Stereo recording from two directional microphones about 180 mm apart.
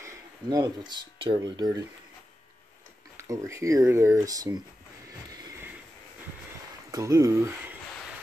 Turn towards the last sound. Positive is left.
turn(degrees=-15)  # may be behind; listen again after turning